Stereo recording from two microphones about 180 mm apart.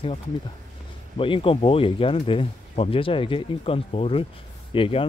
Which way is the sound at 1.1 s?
30° left (ahead or behind).